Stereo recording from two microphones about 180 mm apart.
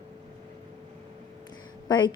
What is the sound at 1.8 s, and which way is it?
Speech, 25° left (ahead or behind).